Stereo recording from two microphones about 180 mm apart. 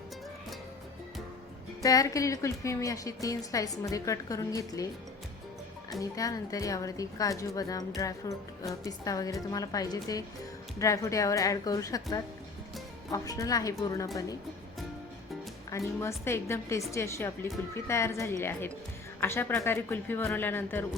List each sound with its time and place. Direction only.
1.8 s a woman's voice: 20° left (ahead or behind)
6.0 s a woman's voice: 20° left (ahead or behind)
13.1 s a woman's voice: 20° left (ahead or behind)
16.0 s a woman's voice: 15° left (ahead or behind)